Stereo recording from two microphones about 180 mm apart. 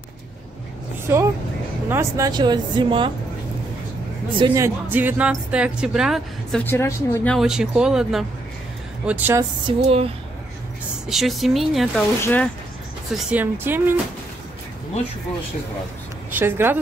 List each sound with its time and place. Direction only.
1.0 s speech: 15° right (ahead or behind)
4.6 s speech: 15° right (ahead or behind)
6.6 s a woman's voice: 10° left (ahead or behind)
7.3 s speech: 5° right (ahead or behind)
9.4 s music: 30° right (ahead or behind)
11.1 s speech: centre (ahead or behind)
12.2 s a woman's voice: 10° left (ahead or behind)
13.1 s speech: 10° right (ahead or behind)
16.3 s speech: 10° right (ahead or behind)